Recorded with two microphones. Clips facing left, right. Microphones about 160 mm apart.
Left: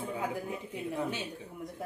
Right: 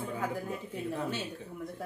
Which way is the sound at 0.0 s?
15° left (ahead or behind).